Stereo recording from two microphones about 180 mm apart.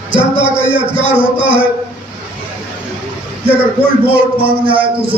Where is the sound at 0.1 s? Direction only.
30° right (ahead or behind).